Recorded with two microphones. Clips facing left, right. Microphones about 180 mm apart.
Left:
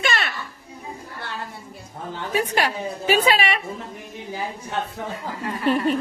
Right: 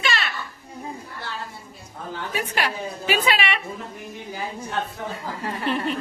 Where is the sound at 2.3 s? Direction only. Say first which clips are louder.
Left 5 dB; 40° left (ahead or behind).